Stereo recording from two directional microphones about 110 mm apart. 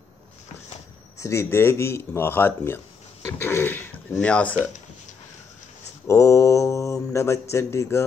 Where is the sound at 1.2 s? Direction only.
25° left (ahead or behind); by 4.5 s 10° left (ahead or behind).